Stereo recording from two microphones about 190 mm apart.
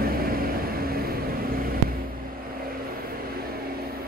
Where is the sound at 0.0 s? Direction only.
50° right (ahead or behind).